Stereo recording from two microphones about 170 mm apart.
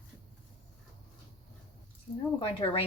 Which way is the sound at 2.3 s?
30° left (ahead or behind).